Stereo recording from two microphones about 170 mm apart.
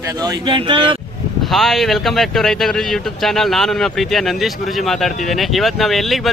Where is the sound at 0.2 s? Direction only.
25° right (ahead or behind).